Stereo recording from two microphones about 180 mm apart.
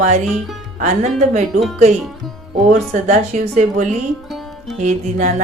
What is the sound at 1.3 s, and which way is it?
Speech, 40° right (ahead or behind).